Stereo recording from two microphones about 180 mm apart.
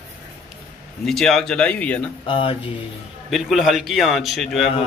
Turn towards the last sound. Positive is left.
turn(degrees=0)  # may be behind; listen again after turning